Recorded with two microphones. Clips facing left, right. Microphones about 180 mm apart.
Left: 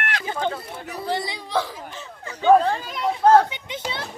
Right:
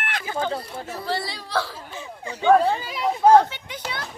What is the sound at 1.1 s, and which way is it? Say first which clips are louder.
Whimper: left 2 dB; 20° left (ahead or behind).